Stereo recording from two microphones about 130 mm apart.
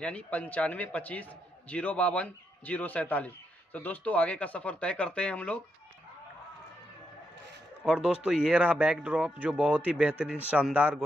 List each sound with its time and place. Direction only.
0.0 s a man's voice: 10° left (ahead or behind)
7.8 s speech: 5° right (ahead or behind)